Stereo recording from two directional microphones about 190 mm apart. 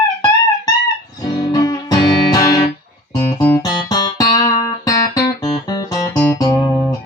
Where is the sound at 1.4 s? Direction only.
20° left (ahead or behind).